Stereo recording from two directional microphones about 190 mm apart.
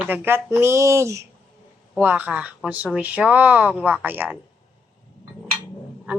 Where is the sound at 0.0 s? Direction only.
10° right (ahead or behind).